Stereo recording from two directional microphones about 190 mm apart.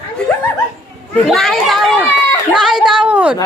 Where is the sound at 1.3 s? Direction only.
Centre (ahead or behind).